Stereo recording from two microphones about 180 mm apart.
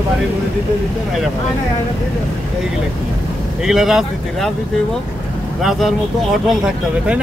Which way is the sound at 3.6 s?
Centre (ahead or behind).